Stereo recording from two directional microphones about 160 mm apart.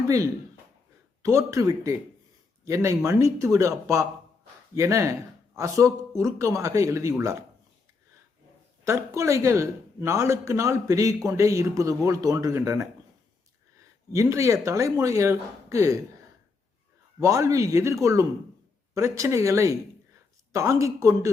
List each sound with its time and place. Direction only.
1.2 s speech: 20° right (ahead or behind)
8.8 s speech: 20° right (ahead or behind)
14.1 s speech: 20° right (ahead or behind)
17.2 s speech: 20° right (ahead or behind)